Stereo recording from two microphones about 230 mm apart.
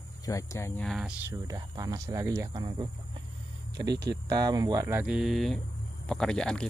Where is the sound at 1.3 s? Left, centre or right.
Centre.